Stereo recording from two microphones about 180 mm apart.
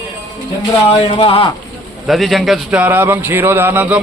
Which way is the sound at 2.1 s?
Centre (ahead or behind).